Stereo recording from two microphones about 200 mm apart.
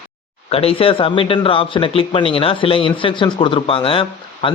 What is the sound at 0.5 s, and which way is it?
A man's voice, 30° left (ahead or behind).